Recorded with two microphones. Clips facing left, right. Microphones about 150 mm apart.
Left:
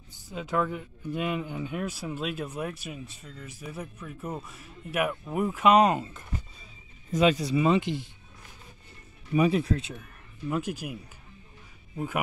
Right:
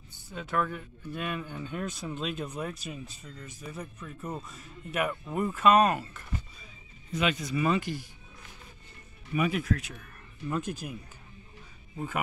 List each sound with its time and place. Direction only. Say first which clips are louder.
0.3 s speech: left 2 dB; 15° left (ahead or behind)
7.1 s speech: left 6 dB; 35° left (ahead or behind)
9.3 s speech: left 4 dB; 30° left (ahead or behind)
10.5 s speech: left 2 dB; 10° left (ahead or behind)